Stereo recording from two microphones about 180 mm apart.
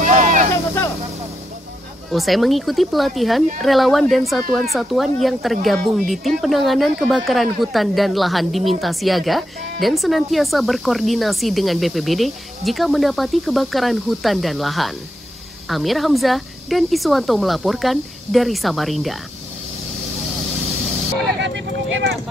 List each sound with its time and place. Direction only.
0.0 s a sound: 45° right (ahead or behind)
2.0 s speech: centre (ahead or behind)
21.4 s speech: 85° right